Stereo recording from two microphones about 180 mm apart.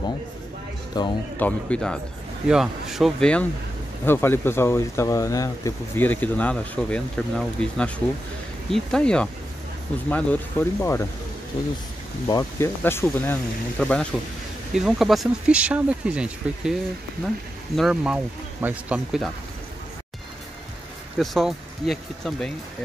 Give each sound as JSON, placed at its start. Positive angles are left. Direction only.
{"t": 1.0, "sound": "speech", "side_deg": 20}
{"t": 1.4, "sound": "speech", "side_deg": 5}
{"t": 12.3, "sound": "speech", "side_deg": 15}
{"t": 17.7, "sound": "speech", "side_deg": -5}
{"t": 21.2, "sound": "speech", "side_deg": 0}